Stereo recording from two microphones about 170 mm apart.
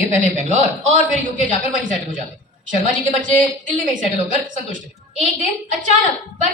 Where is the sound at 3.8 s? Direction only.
50° right (ahead or behind).